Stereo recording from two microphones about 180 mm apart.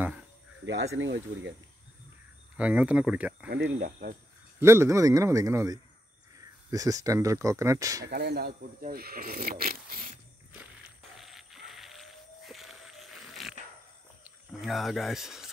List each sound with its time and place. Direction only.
0.9 s speech: 85° right
2.5 s a man's voice: 5° right (ahead or behind)
3.4 s speech: 70° right (ahead or behind)
4.6 s a man's voice: 15° right (ahead or behind)
8.1 s speech: 65° right (ahead or behind)
11.1 s a sound: centre (ahead or behind)
14.2 s speech: centre (ahead or behind)